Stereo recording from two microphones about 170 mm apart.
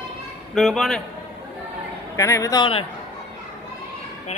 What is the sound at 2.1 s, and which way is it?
Speech, 20° left (ahead or behind).